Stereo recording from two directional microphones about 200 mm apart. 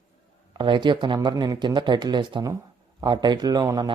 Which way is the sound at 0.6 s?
25° right (ahead or behind).